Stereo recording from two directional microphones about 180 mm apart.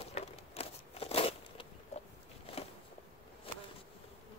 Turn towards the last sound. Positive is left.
turn(degrees=30)  # may be behind; listen again after turning